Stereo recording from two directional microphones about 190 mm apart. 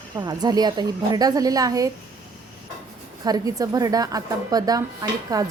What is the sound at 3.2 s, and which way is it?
A woman's voice, 20° right (ahead or behind).